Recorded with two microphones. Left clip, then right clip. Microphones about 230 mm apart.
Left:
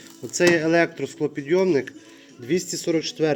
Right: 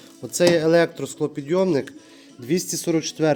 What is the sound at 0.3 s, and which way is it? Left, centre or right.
A man's voice, centre.